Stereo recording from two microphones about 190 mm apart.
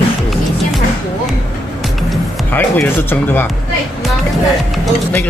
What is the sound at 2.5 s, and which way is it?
Speech, 10° left (ahead or behind).